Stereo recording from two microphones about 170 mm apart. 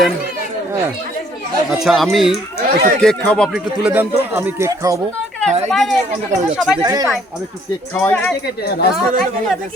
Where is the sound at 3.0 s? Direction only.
5° left (ahead or behind).